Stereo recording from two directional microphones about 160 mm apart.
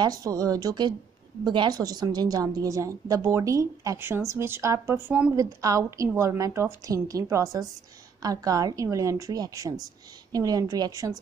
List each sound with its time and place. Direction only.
0.0 s a woman's voice: 25° right (ahead or behind)